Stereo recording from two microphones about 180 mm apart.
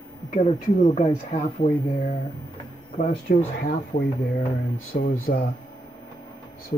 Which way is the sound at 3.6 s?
45° left (ahead or behind).